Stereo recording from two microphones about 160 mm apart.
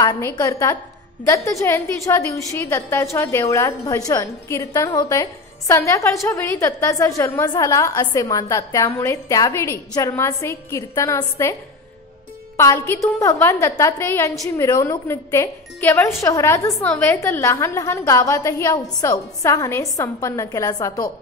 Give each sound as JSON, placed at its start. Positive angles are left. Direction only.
{"t": 0.0, "sound": "a woman's voice", "side_deg": 20}
{"t": 12.5, "sound": "a woman's voice", "side_deg": 15}